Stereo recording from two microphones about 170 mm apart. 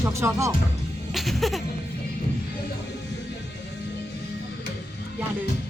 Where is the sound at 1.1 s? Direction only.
Centre (ahead or behind).